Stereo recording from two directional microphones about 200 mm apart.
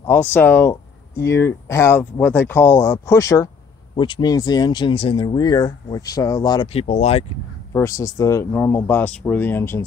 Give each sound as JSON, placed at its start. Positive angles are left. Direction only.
{"t": 0.0, "sound": "speech", "side_deg": 10}
{"t": 7.7, "sound": "speech", "side_deg": 15}